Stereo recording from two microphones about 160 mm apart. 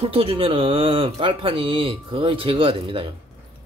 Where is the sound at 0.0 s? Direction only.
35° right (ahead or behind).